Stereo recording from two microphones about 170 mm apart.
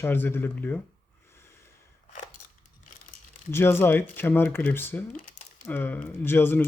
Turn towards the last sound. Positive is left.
turn(degrees=10)  # may be behind; listen again after turning